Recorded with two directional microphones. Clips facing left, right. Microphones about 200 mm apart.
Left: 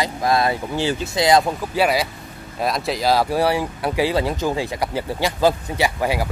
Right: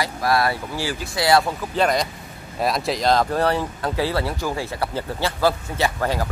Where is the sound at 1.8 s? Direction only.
5° left (ahead or behind).